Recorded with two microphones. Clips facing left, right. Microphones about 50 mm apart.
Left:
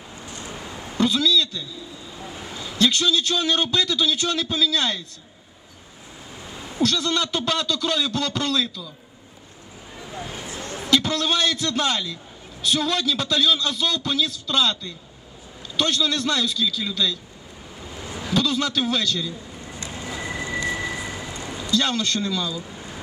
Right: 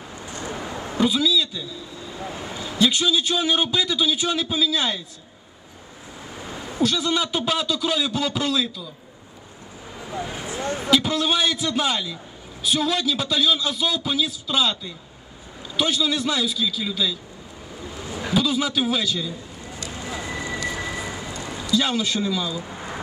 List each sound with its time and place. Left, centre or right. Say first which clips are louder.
0.4 s a sound: right 6 dB; right
0.9 s a man's voice: even; centre
2.6 s a man's voice: even; centre
6.8 s a man's voice: even; centre
10.1 s a sound: right 4 dB; right
10.9 s a man's voice: even; centre
18.3 s a man's voice: right 1 dB; centre
20.0 s vehicle: right 1 dB; right
20.2 s vehicle: left 2 dB; left
20.7 s vehicle: left 1 dB; right
21.4 s a sound: even; right
21.7 s a man's voice: right 1 dB; centre
22.5 s a sound: right 3 dB; right